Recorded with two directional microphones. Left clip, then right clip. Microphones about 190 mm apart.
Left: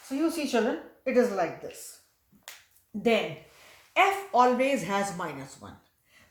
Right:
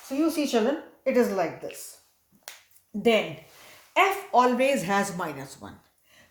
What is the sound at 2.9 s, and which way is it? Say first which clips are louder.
Speech: right 3 dB; 40° right (ahead or behind).